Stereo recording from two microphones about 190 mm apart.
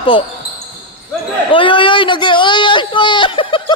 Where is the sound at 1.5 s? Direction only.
25° left (ahead or behind).